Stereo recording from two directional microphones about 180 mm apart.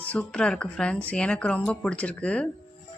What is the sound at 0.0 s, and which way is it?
Speech, 5° left (ahead or behind).